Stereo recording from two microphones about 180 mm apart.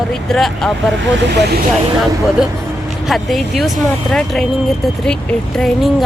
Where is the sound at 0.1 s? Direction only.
Centre (ahead or behind).